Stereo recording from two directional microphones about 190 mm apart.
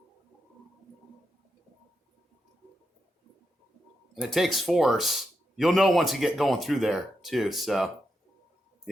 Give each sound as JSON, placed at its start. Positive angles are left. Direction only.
{"t": 4.1, "sound": "speech", "side_deg": 0}